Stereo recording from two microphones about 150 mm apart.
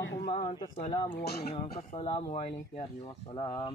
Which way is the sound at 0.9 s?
35° left (ahead or behind).